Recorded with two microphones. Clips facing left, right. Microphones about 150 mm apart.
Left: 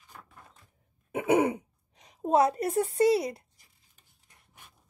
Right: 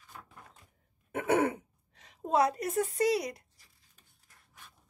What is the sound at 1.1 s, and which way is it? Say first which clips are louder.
Throat clearing: left 3 dB; 15° left (ahead or behind).